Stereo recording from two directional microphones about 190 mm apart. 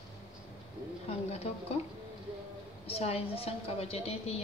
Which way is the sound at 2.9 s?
30° left (ahead or behind).